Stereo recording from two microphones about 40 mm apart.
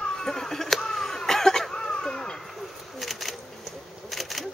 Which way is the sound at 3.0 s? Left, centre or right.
Centre.